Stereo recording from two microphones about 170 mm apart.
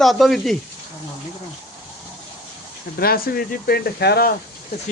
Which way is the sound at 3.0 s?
60° left (ahead or behind).